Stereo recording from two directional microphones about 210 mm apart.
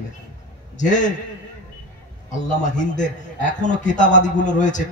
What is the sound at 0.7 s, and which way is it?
Speech, 35° left (ahead or behind).